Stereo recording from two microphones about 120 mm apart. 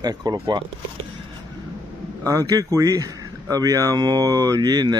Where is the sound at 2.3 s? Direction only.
30° right (ahead or behind).